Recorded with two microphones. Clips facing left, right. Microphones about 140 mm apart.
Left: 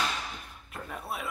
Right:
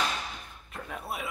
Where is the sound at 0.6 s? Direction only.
Centre (ahead or behind).